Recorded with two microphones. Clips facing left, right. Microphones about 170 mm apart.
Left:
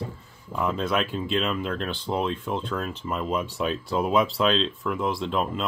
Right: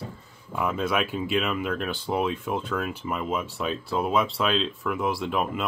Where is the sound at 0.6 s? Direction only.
5° right (ahead or behind).